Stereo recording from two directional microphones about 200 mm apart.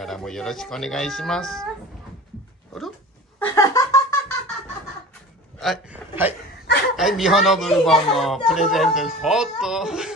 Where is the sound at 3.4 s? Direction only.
15° left (ahead or behind).